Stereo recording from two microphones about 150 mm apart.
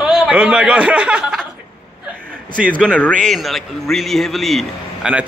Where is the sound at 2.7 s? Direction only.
10° left (ahead or behind).